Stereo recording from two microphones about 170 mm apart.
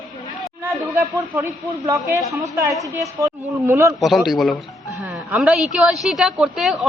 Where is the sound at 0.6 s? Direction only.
10° right (ahead or behind).